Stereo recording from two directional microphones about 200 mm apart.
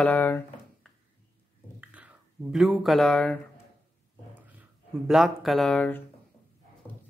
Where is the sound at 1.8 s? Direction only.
5° right (ahead or behind).